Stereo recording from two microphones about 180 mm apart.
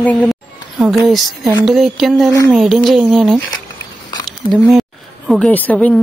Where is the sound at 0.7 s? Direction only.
Centre (ahead or behind).